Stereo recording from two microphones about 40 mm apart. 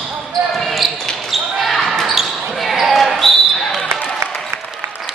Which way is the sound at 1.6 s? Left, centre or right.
Centre.